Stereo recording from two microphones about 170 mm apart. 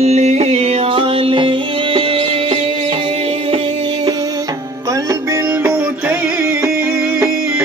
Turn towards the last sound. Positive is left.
turn(degrees=-10)  # may be behind; listen again after turning